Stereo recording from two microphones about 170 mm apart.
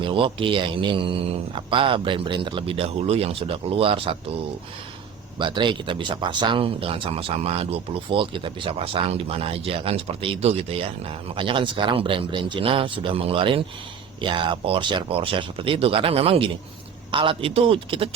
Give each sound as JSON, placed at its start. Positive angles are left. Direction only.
{"t": 0.0, "sound": "speech", "side_deg": -30}
{"t": 5.4, "sound": "speech", "side_deg": -30}